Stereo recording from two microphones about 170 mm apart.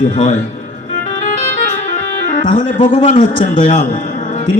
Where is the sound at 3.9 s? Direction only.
50° left (ahead or behind).